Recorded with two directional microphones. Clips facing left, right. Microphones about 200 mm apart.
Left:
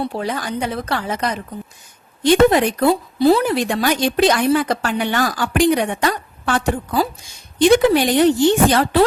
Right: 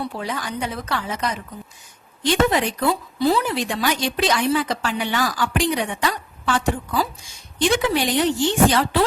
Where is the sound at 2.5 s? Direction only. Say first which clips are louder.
Left 6 dB; 55° left (ahead or behind).